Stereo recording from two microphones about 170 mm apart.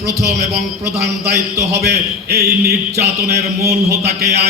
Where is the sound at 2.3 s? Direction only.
65° right (ahead or behind).